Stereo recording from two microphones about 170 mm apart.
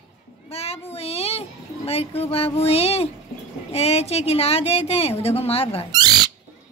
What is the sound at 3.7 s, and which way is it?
A woman's voice, 35° left (ahead or behind).